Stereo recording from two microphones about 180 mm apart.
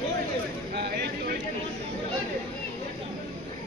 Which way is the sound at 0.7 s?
65° right (ahead or behind).